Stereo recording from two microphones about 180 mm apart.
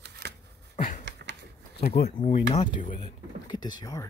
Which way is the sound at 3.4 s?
25° left (ahead or behind).